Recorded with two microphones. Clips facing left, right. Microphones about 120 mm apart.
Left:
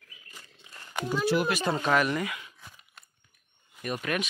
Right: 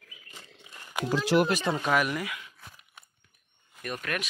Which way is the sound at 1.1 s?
90° right.